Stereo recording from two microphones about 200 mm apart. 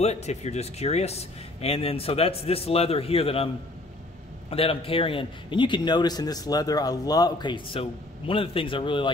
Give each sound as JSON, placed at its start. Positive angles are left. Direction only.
{"t": 0.0, "sound": "speech", "side_deg": 35}
{"t": 4.5, "sound": "speech", "side_deg": 30}